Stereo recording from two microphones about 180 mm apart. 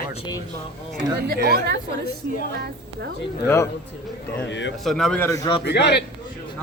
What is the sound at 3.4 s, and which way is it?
Speech, 15° left (ahead or behind).